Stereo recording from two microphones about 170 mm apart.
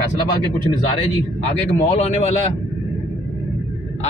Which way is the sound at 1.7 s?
40° left (ahead or behind).